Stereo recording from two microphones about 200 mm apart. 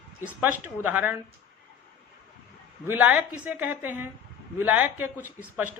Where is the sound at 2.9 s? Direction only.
10° right (ahead or behind).